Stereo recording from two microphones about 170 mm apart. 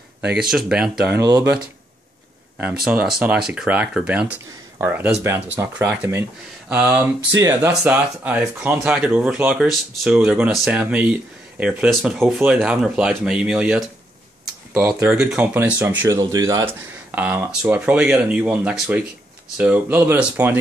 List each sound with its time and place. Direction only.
0.4 s speech: 5° right (ahead or behind)
1.2 s speech: 20° right (ahead or behind)
2.8 s speech: 5° right (ahead or behind)